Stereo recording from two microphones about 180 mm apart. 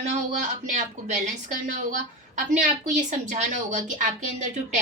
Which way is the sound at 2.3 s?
45° right (ahead or behind).